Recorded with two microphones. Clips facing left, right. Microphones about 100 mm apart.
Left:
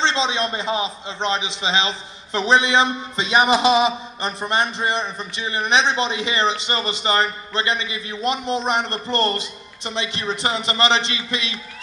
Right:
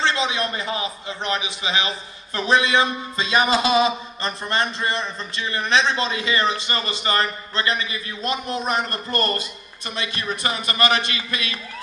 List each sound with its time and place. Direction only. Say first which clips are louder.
0.0 s a man's voice: left 1 dB; 25° left (ahead or behind)